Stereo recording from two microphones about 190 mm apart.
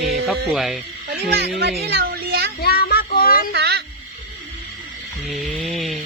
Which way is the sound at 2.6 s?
55° left (ahead or behind).